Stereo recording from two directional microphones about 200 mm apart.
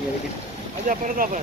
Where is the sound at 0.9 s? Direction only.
40° right (ahead or behind).